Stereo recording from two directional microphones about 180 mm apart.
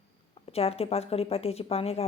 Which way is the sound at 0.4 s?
35° left (ahead or behind).